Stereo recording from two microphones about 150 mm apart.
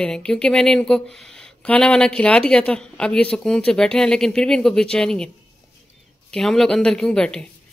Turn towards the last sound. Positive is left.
turn(degrees=5)  # may be behind; listen again after turning